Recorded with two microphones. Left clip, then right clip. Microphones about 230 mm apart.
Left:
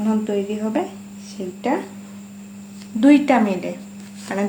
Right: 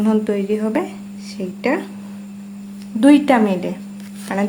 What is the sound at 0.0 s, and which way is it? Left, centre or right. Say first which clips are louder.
Speech: right 3 dB; right.